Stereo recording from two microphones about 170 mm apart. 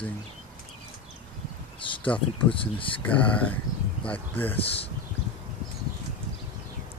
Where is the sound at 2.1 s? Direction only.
30° left (ahead or behind).